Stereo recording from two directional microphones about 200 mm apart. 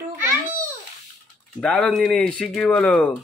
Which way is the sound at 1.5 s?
5° left (ahead or behind).